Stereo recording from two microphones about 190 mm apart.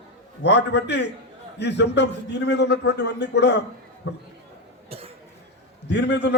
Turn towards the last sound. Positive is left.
turn(degrees=65)  # may be behind; listen again after turning